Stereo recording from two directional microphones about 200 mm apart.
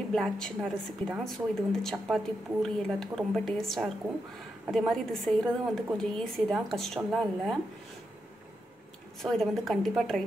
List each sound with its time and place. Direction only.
0.1 s a woman's voice: centre (ahead or behind)
9.2 s a woman's voice: centre (ahead or behind)